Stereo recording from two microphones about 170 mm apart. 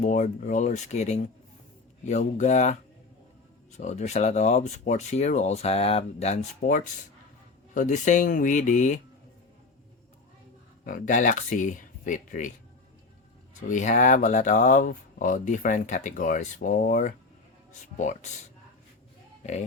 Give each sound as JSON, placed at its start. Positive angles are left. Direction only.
{"t": 0.0, "sound": "speech", "side_deg": 45}
{"t": 10.8, "sound": "speech", "side_deg": 50}
{"t": 13.6, "sound": "speech", "side_deg": 45}
{"t": 19.4, "sound": "speech", "side_deg": 40}